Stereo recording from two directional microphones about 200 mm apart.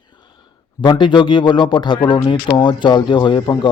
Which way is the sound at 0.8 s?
25° left (ahead or behind).